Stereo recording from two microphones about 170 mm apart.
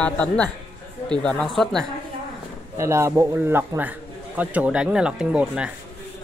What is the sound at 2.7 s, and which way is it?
A man's voice, 15° right (ahead or behind).